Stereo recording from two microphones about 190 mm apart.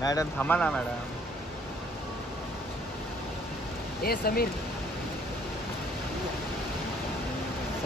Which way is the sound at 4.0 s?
50° left (ahead or behind).